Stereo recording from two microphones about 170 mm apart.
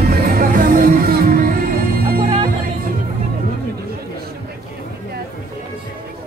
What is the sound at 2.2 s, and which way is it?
Music, 35° right (ahead or behind).